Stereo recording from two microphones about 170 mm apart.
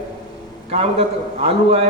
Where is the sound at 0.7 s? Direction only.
35° right (ahead or behind).